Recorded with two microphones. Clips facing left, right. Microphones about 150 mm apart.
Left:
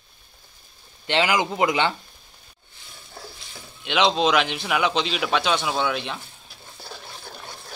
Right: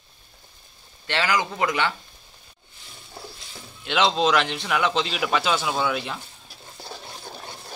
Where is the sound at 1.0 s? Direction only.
20° left (ahead or behind).